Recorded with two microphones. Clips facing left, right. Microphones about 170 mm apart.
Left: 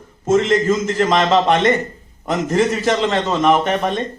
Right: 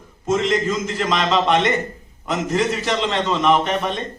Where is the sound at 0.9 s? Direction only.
45° left (ahead or behind).